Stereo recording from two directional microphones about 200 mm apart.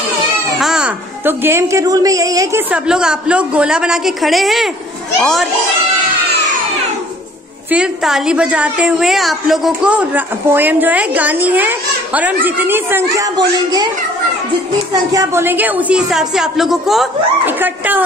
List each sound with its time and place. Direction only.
0.6 s a woman's voice: 5° right (ahead or behind)
2.7 s a woman's voice: 5° right (ahead or behind)
7.7 s a woman's voice: 5° right (ahead or behind); by 13.8 s 20° right (ahead or behind)
15.1 s a woman's voice: 10° right (ahead or behind)